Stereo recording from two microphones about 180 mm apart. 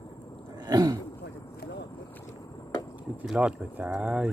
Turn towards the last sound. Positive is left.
turn(degrees=-5)  # may be behind; listen again after turning